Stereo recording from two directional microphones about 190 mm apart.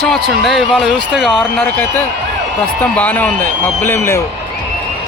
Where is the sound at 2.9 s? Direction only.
10° left (ahead or behind).